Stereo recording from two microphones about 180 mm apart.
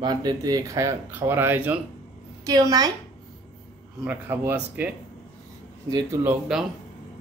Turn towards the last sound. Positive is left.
turn(degrees=-5)  # may be behind; listen again after turning